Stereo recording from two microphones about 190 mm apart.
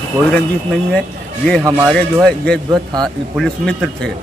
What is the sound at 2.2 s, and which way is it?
Speech, 5° left (ahead or behind).